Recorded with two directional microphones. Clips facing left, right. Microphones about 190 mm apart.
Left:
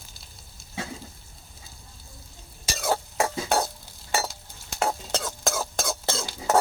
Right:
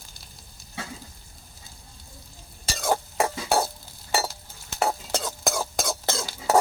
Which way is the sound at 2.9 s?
10° right (ahead or behind).